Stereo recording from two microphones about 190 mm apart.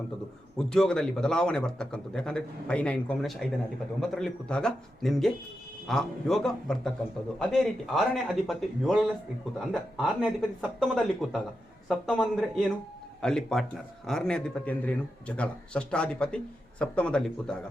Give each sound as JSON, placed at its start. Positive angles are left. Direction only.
{"t": 0.7, "sound": "speech", "side_deg": 5}